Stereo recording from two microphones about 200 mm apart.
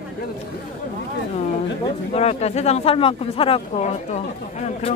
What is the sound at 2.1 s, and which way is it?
Speech, 30° left (ahead or behind).